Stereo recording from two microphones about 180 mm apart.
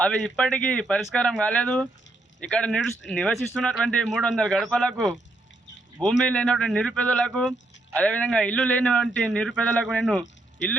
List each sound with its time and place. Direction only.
0.0 s speech: 5° left (ahead or behind)